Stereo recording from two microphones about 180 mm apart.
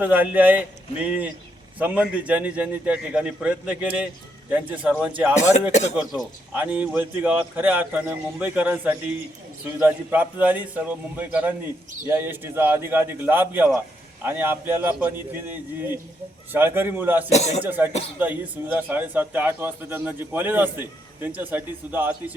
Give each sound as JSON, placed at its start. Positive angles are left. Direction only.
{"t": 0.0, "sound": "a man's voice", "side_deg": -10}
{"t": 6.5, "sound": "a man's voice", "side_deg": -10}
{"t": 17.3, "sound": "speech", "side_deg": 35}
{"t": 17.6, "sound": "a man's voice", "side_deg": -10}